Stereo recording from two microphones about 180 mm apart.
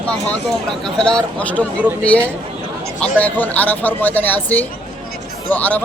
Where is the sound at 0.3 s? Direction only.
5° left (ahead or behind).